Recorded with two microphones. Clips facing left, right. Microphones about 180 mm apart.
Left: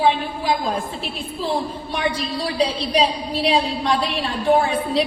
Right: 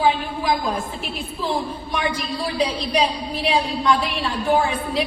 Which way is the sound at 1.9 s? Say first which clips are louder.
Left 1 dB; 30° left (ahead or behind).